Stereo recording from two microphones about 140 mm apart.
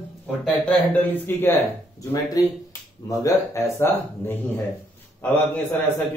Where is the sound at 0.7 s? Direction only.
10° left (ahead or behind).